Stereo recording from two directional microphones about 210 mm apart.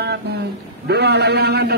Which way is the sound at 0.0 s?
50° right (ahead or behind).